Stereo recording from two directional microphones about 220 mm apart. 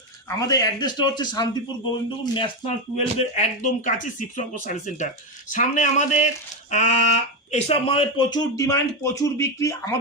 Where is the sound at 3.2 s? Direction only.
35° left (ahead or behind).